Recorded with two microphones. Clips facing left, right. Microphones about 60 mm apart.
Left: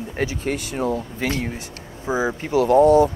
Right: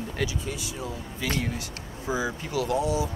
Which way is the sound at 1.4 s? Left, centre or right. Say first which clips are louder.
Left 3 dB; left.